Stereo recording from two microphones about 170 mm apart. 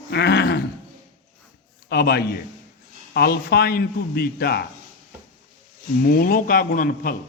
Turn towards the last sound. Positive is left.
turn(degrees=55)  # may be behind; listen again after turning